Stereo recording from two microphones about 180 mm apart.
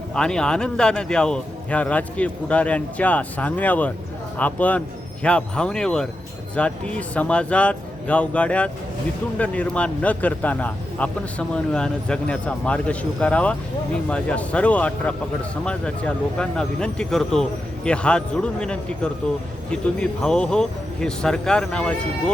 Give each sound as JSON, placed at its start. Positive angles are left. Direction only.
{"t": 0.1, "sound": "speech", "side_deg": 5}